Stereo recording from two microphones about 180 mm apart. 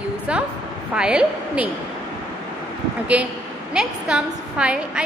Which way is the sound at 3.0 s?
5° right (ahead or behind).